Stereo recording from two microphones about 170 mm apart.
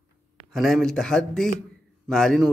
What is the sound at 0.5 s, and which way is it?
A man's voice, centre (ahead or behind).